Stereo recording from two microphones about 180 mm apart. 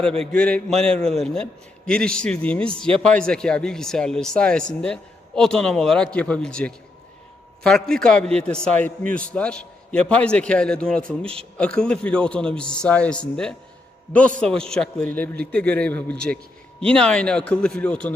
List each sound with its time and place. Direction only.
0.0 s a man's voice: 5° left (ahead or behind)